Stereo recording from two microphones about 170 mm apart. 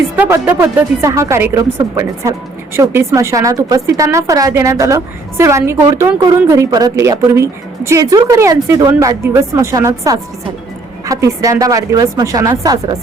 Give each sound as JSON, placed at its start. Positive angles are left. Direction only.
{"t": 0.2, "sound": "speech", "side_deg": -15}